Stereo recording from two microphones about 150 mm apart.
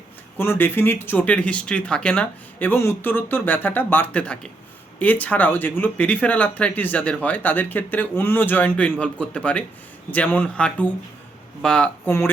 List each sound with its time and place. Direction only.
0.3 s speech: 15° left (ahead or behind)
12.0 s speech: 15° left (ahead or behind)